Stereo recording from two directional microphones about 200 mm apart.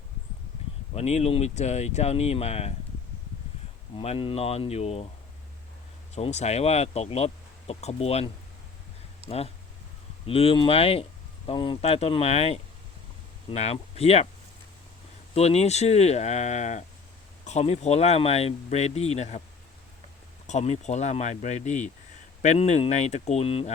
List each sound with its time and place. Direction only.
0.9 s speech: 30° left (ahead or behind)
3.9 s speech: 30° left (ahead or behind)
6.1 s speech: 35° left (ahead or behind)
9.2 s speech: 30° right (ahead or behind)
10.2 s speech: 30° left (ahead or behind)
15.4 s speech: 30° left (ahead or behind)
20.5 s speech: 35° left (ahead or behind)